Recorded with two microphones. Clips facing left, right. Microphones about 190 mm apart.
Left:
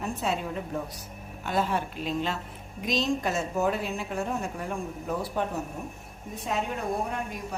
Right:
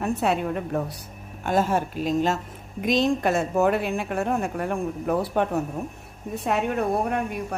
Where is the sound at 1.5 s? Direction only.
45° right (ahead or behind).